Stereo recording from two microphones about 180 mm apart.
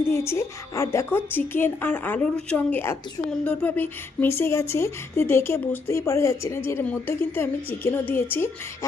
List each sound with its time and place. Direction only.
0.0 s speech: 15° left (ahead or behind)